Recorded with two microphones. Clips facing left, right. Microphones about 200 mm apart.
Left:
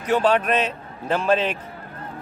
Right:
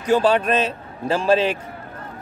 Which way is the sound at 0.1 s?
30° right (ahead or behind).